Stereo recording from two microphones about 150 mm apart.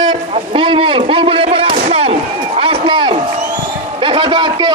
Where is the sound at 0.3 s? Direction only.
35° right (ahead or behind).